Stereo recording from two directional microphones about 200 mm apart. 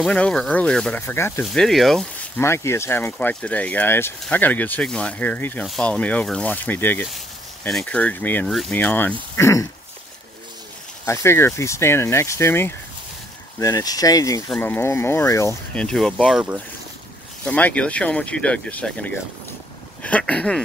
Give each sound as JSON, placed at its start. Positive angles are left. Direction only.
{"t": 0.0, "sound": "speech", "side_deg": 5}
{"t": 1.4, "sound": "speech", "side_deg": 0}
{"t": 2.4, "sound": "speech", "side_deg": 15}
{"t": 11.1, "sound": "speech", "side_deg": 15}
{"t": 15.8, "sound": "speech", "side_deg": 5}